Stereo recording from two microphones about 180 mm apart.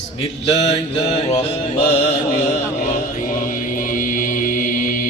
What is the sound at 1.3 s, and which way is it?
Mantra, 40° left (ahead or behind).